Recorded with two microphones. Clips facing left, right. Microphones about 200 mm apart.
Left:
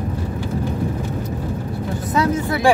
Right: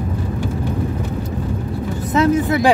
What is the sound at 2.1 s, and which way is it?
Vehicle, 20° right (ahead or behind).